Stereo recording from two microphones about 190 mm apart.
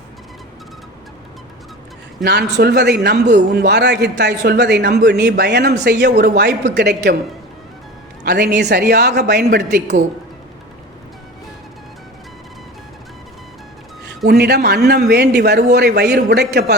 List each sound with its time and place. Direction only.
2.2 s a man's voice: 60° right (ahead or behind)
8.2 s a man's voice: 60° right (ahead or behind)
14.3 s a man's voice: 60° right (ahead or behind)